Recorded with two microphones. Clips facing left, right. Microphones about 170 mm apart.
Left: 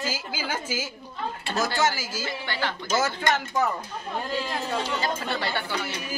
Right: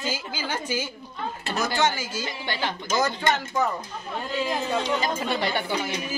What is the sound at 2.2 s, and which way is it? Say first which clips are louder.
Speech: left 1 dB; 15° right (ahead or behind).